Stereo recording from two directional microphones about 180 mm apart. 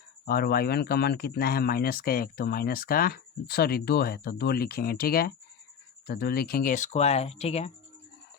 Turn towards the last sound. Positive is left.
turn(degrees=35)  # may be behind; listen again after turning